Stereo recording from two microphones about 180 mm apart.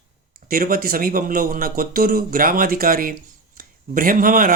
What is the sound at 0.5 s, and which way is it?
Speech, 50° right (ahead or behind).